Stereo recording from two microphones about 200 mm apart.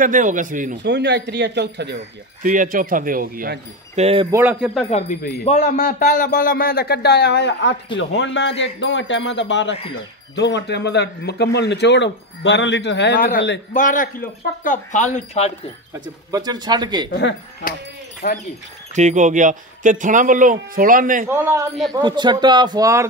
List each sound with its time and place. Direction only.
0.0 s speech: 40° right (ahead or behind)
0.8 s speech: 60° right (ahead or behind)
2.4 s speech: 40° right (ahead or behind)
4.0 s speech: 30° right (ahead or behind)
4.3 s a man's voice: 10° right (ahead or behind)
4.8 s speech: 30° left (ahead or behind); by 13.2 s 60° left (ahead or behind)
13.7 s speech: 40° left (ahead or behind)
16.3 s speech: 20° right (ahead or behind)
17.1 s speech: 60° left (ahead or behind)
18.9 s speech: 35° right (ahead or behind)
21.3 s a man's voice: 15° right (ahead or behind)